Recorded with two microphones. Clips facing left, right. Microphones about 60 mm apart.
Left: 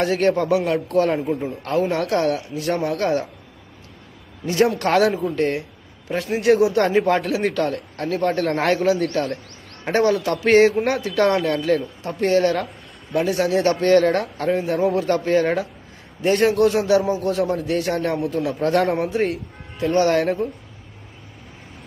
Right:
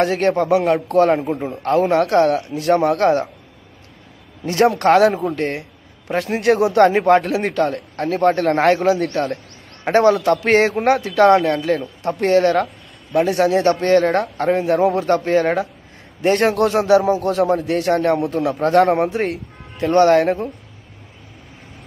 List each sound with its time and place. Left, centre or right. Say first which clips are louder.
0.0 s a man's voice: right 2 dB; right
4.5 s a man's voice: right 4 dB; right
10.7 s a man's voice: right 4 dB; right
14.6 s a man's voice: right 4 dB; right
15.0 s a man's voice: right 2 dB; right
17.0 s a man's voice: right 4 dB; right
18.9 s speech: right 3 dB; right